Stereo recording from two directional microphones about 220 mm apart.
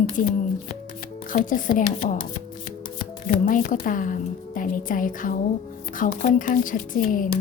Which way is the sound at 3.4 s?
40° left (ahead or behind).